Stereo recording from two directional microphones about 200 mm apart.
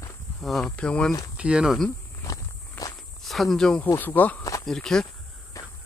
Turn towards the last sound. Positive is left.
turn(degrees=15)  # may be behind; listen again after turning